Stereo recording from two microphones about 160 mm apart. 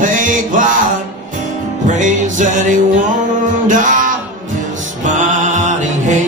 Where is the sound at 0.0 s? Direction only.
55° right (ahead or behind).